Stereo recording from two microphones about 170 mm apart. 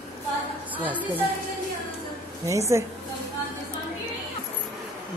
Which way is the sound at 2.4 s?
20° right (ahead or behind).